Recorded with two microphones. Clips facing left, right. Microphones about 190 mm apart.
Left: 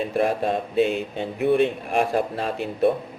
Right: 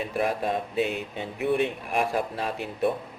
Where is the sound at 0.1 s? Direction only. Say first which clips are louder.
Left 4 dB; 30° left (ahead or behind).